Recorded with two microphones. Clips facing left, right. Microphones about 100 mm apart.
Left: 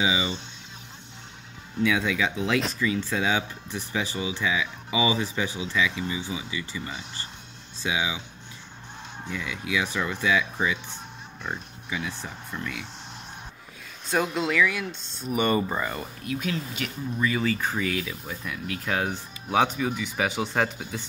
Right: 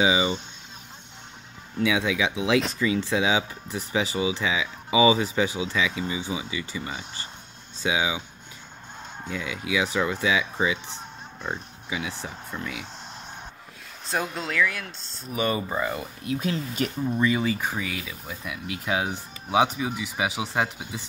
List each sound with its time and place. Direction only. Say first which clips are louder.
0.0 s speech: right 4 dB; 25° right (ahead or behind)
1.8 s speech: right 1 dB; 15° right (ahead or behind)
9.2 s speech: right 1 dB; 20° right (ahead or behind)
14.0 s speech: left 4 dB; centre (ahead or behind)
16.3 s speech: right 3 dB; 30° right (ahead or behind)
17.3 s speech: right 1 dB; 20° right (ahead or behind)